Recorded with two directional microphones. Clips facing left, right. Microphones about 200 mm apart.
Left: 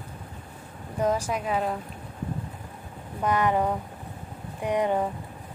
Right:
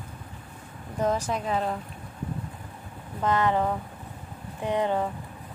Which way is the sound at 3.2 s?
15° left (ahead or behind).